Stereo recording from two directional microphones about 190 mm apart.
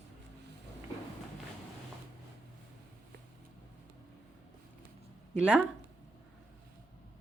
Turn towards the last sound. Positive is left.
turn(degrees=-5)  # may be behind; listen again after turning